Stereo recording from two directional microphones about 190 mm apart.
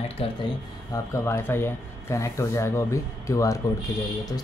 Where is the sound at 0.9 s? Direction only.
15° left (ahead or behind).